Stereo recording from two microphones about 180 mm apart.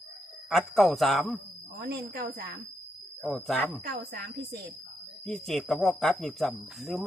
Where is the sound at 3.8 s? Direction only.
65° right (ahead or behind).